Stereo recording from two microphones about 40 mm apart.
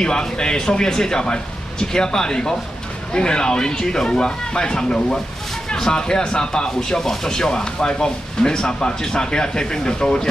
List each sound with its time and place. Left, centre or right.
0.0 s speech: centre